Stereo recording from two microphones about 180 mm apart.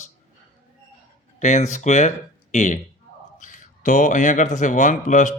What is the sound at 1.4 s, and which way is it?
Speech, 40° left (ahead or behind).